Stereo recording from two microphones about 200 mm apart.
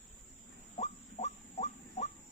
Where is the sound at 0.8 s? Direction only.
35° left (ahead or behind).